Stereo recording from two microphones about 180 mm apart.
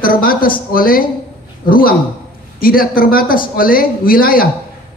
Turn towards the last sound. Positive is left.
turn(degrees=55)  # may be behind; listen again after turning